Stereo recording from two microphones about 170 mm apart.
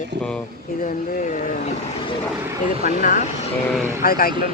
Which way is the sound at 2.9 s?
50° left (ahead or behind).